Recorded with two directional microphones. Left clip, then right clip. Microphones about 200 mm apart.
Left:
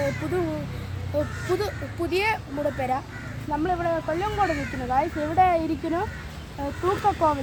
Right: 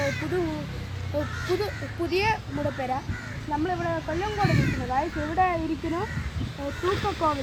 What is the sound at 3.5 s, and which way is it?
Speech, 10° left (ahead or behind).